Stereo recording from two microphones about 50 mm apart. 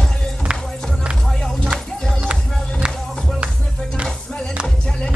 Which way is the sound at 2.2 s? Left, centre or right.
Right.